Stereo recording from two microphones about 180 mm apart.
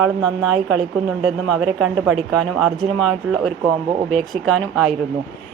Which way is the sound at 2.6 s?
Centre (ahead or behind).